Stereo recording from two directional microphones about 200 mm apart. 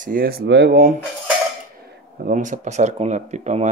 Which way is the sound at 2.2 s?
40° right (ahead or behind).